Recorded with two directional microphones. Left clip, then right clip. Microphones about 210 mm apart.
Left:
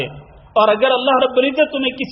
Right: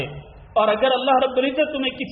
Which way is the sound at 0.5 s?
30° left (ahead or behind).